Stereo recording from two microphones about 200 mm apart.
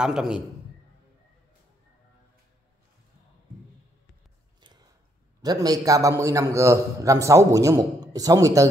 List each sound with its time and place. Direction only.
0.0 s a man's voice: 5° right (ahead or behind)
4.6 s a sound: 20° right (ahead or behind)
5.4 s a man's voice: 20° right (ahead or behind)